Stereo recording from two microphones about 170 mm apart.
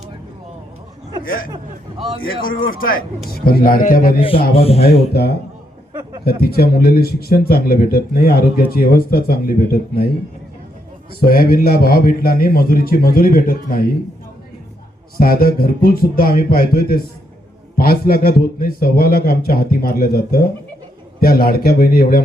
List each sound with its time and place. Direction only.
1.2 s a man's voice: 55° left (ahead or behind)
4.2 s speech: 30° left (ahead or behind)
5.9 s speech: 25° right (ahead or behind)
6.2 s a man's voice: 65° left (ahead or behind)
11.2 s a man's voice: 60° left (ahead or behind)
15.2 s a man's voice: 60° left (ahead or behind)